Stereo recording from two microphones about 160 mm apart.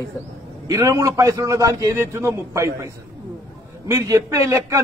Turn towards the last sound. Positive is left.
turn(degrees=-20)  # may be behind; listen again after turning